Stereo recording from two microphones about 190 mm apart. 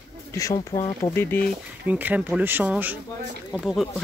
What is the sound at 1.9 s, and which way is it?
Speech, 10° right (ahead or behind).